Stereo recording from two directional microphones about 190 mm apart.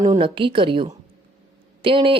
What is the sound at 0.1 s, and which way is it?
Speech, 25° right (ahead or behind).